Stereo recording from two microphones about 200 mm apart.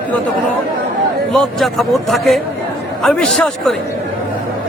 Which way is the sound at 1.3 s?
Centre (ahead or behind).